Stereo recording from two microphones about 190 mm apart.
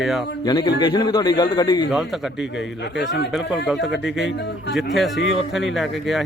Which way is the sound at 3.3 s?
Centre (ahead or behind).